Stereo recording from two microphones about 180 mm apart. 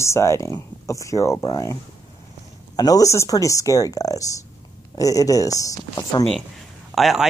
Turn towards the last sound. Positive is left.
turn(degrees=0)  # may be behind; listen again after turning